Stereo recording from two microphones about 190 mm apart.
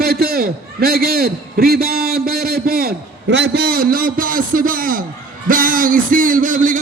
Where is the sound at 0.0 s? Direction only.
55° right (ahead or behind).